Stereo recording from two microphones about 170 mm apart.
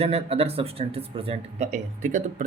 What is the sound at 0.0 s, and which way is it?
Speech, 35° right (ahead or behind).